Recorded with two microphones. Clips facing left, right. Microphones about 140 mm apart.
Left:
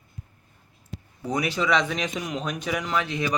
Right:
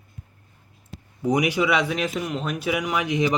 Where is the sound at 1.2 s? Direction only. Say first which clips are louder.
Right 4 dB; 15° right (ahead or behind).